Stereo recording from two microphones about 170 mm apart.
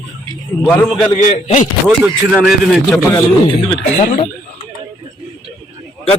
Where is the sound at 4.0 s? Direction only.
45° left (ahead or behind).